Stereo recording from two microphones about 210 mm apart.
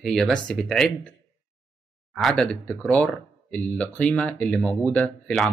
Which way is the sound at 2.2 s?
Centre (ahead or behind).